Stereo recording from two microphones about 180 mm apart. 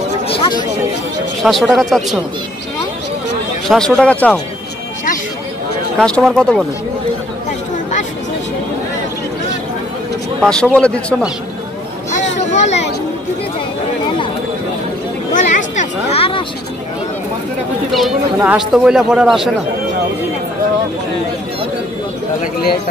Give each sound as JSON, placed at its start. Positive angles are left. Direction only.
{"t": 0.3, "sound": "speech", "side_deg": 25}
{"t": 1.4, "sound": "speech", "side_deg": 0}
{"t": 3.6, "sound": "speech", "side_deg": 5}
{"t": 5.9, "sound": "speech", "side_deg": 5}
{"t": 10.4, "sound": "speech", "side_deg": 5}
{"t": 12.4, "sound": "a sound", "side_deg": 40}
{"t": 15.3, "sound": "a sound", "side_deg": 45}
{"t": 17.9, "sound": "speech", "side_deg": -5}